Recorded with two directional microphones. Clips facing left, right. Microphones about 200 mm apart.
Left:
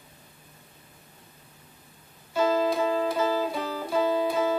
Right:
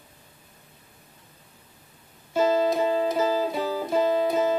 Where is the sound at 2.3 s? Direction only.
25° right (ahead or behind).